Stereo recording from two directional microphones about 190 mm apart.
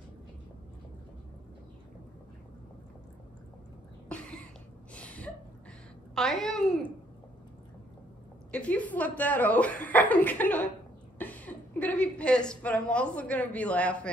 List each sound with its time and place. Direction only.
4.9 s gasp: 5° left (ahead or behind)
6.1 s a sound: centre (ahead or behind)
8.5 s a woman's voice: 5° left (ahead or behind)